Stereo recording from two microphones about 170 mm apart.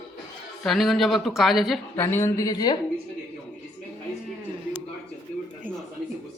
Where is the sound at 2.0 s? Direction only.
15° left (ahead or behind).